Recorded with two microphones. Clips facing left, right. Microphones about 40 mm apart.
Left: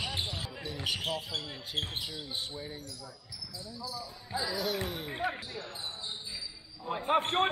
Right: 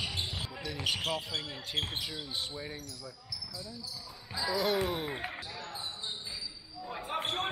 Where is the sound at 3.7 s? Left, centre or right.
Left.